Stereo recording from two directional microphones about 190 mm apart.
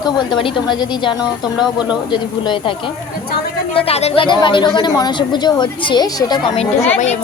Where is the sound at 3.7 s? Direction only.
30° left (ahead or behind).